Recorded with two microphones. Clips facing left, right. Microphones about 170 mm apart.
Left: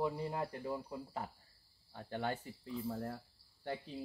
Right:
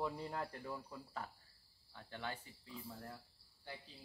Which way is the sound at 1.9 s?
45° left (ahead or behind).